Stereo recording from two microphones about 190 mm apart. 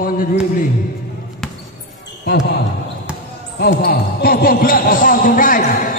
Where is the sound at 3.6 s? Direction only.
55° left (ahead or behind).